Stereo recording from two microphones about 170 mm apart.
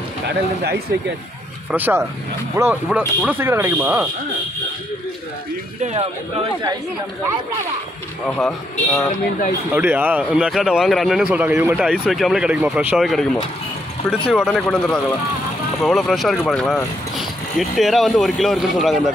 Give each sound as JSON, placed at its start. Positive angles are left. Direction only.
{"t": 1.7, "sound": "speech", "side_deg": -10}
{"t": 8.4, "sound": "a man's voice", "side_deg": 5}
{"t": 9.8, "sound": "a man's voice", "side_deg": -10}